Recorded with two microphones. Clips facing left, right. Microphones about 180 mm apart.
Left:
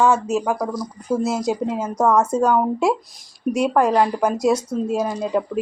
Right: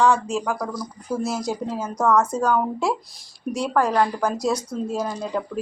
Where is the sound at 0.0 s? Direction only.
20° left (ahead or behind).